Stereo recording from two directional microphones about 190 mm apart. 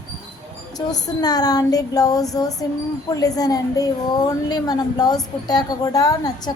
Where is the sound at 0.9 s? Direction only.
20° left (ahead or behind).